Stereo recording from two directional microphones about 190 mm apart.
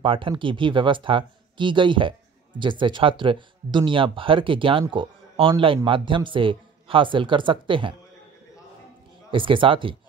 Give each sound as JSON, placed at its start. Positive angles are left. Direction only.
{"t": 0.0, "sound": "speech", "side_deg": -25}
{"t": 9.3, "sound": "speech", "side_deg": -25}